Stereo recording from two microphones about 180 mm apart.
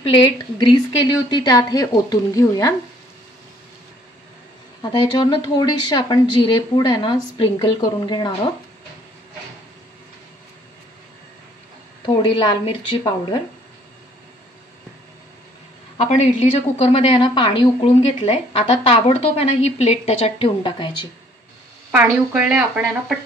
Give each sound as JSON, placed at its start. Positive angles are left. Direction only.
{"t": 0.0, "sound": "a woman's voice", "side_deg": 30}
{"t": 4.8, "sound": "a woman's voice", "side_deg": 25}
{"t": 12.2, "sound": "a woman's voice", "side_deg": 25}
{"t": 16.1, "sound": "a woman's voice", "side_deg": 35}
{"t": 21.9, "sound": "speech", "side_deg": -10}